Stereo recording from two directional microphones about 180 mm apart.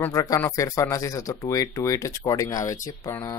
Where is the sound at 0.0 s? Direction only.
15° left (ahead or behind).